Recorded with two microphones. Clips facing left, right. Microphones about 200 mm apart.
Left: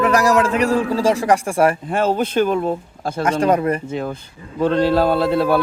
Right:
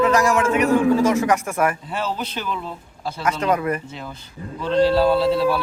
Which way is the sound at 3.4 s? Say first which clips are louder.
Left 4 dB; 35° left (ahead or behind).